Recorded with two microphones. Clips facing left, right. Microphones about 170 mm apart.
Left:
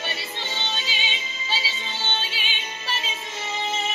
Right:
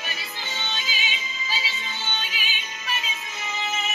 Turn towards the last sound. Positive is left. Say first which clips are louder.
# left 1 dB
turn(degrees=30)  # may be behind; listen again after turning